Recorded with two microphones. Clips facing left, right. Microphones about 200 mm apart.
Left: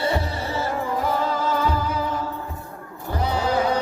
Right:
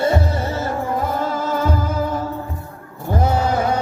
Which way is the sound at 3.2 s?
45° right (ahead or behind).